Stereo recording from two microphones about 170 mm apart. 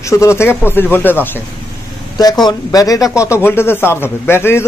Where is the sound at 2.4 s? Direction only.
20° left (ahead or behind).